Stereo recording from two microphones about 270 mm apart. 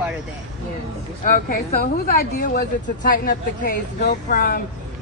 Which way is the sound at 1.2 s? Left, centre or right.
Left.